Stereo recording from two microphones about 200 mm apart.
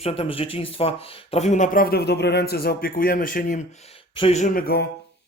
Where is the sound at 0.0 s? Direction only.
30° left (ahead or behind); by 3.6 s 45° left (ahead or behind).